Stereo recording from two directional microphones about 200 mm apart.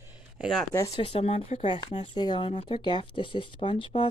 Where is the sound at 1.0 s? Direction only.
30° left (ahead or behind).